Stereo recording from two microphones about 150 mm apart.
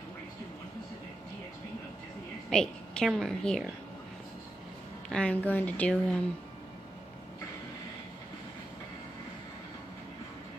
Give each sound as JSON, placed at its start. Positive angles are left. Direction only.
{"t": 2.5, "sound": "a woman's voice", "side_deg": 5}
{"t": 5.1, "sound": "speech", "side_deg": 5}